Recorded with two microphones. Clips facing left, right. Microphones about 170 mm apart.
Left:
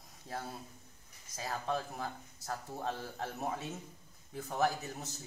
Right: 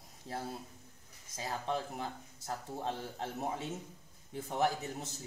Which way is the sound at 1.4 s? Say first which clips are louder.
Even; 20° right (ahead or behind).